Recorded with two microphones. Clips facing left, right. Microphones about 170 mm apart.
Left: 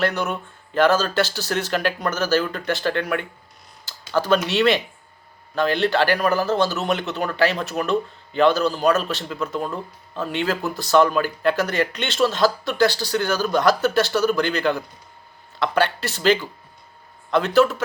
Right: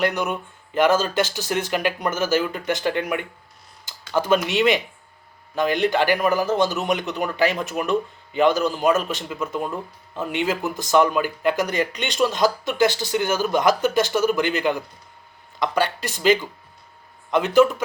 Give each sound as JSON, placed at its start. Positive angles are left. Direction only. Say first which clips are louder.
{"t": 0.0, "sound": "a man's voice", "louder": "even", "side_deg": -15}
{"t": 3.8, "sound": "a sound", "louder": "even", "side_deg": -15}
{"t": 4.4, "sound": "a man's voice", "louder": "left 1 dB", "side_deg": -15}